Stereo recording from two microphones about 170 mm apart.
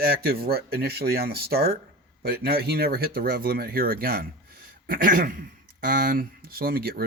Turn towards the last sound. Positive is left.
turn(degrees=-60)  # may be behind; listen again after turning